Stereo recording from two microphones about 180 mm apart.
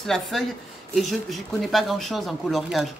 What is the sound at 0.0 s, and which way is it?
Speech, centre (ahead or behind).